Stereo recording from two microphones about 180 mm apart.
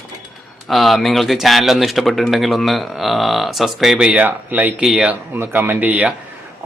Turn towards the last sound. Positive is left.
turn(degrees=-10)  # may be behind; listen again after turning